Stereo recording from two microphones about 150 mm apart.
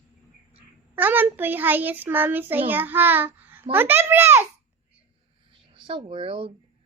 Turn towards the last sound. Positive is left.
turn(degrees=-35)  # may be behind; listen again after turning